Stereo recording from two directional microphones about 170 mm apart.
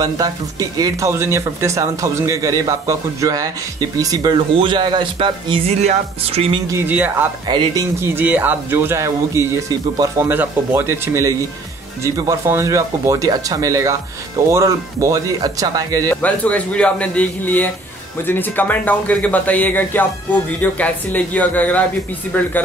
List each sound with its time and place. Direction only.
0.0 s speech: 20° right (ahead or behind)
6.7 s speech: 10° right (ahead or behind)
7.4 s speech: 25° right (ahead or behind)
8.0 s speech: 10° right (ahead or behind)
16.1 s speech: 10° left (ahead or behind)